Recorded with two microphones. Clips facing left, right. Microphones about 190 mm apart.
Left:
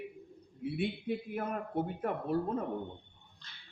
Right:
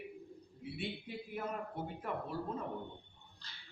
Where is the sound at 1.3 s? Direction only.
55° left (ahead or behind).